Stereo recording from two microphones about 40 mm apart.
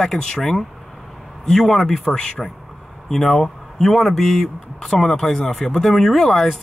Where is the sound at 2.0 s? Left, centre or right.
Centre.